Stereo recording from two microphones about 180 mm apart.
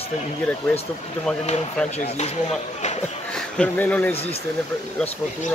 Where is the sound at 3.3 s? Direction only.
5° left (ahead or behind).